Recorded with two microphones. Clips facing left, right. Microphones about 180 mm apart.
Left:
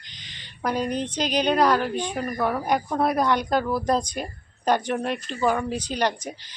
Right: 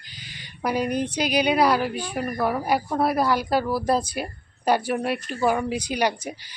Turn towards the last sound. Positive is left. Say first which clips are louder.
# right 1 dB
turn(degrees=-10)  # may be behind; listen again after turning